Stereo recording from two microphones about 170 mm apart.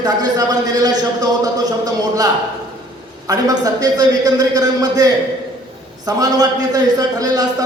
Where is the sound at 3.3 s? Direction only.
20° right (ahead or behind).